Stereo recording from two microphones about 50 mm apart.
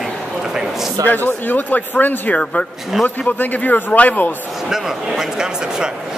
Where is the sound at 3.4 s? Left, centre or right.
Left.